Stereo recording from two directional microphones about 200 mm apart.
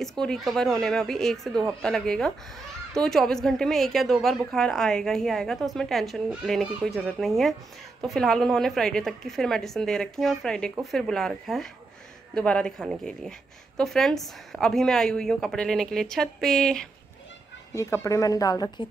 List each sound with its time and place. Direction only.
0.0 s a woman's voice: 5° left (ahead or behind)
17.7 s speech: 15° left (ahead or behind)